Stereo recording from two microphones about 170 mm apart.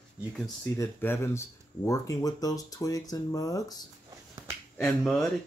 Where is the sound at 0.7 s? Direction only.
15° left (ahead or behind).